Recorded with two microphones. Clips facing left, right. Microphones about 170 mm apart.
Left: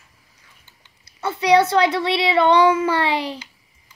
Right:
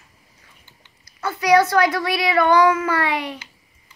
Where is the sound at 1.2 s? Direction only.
30° left (ahead or behind).